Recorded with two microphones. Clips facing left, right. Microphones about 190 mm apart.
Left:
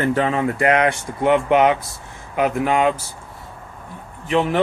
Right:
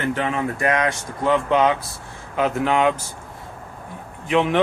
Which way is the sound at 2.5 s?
5° left (ahead or behind).